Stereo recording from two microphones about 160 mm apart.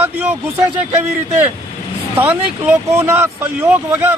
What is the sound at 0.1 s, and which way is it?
Speech, 10° right (ahead or behind).